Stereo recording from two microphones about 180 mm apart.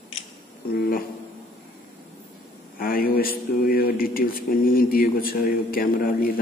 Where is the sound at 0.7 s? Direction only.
55° left (ahead or behind).